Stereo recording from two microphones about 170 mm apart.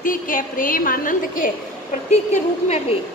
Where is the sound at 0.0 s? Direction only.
55° left (ahead or behind).